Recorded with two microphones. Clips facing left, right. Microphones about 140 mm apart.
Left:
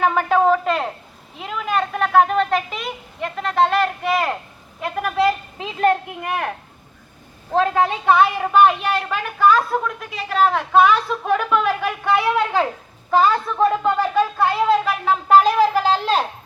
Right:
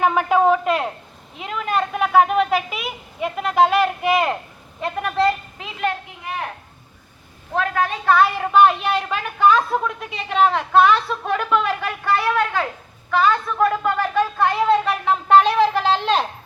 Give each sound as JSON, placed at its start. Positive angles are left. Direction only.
{"t": 0.0, "sound": "a woman's voice", "side_deg": -5}
{"t": 5.8, "sound": "a child's voice", "side_deg": 50}
{"t": 7.5, "sound": "a woman's voice", "side_deg": 25}
{"t": 8.4, "sound": "speech", "side_deg": 10}
{"t": 8.8, "sound": "speech", "side_deg": -10}
{"t": 9.5, "sound": "a woman's voice", "side_deg": 0}
{"t": 13.1, "sound": "a woman's voice", "side_deg": 35}
{"t": 14.0, "sound": "speech", "side_deg": 10}
{"t": 15.7, "sound": "a woman's voice", "side_deg": 35}
{"t": 16.0, "sound": "a woman's voice", "side_deg": 5}